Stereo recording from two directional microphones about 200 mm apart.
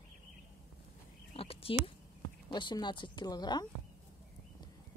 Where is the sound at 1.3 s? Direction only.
30° left (ahead or behind).